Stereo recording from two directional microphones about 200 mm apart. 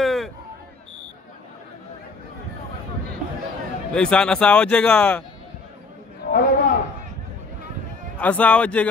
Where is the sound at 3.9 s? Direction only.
5° left (ahead or behind).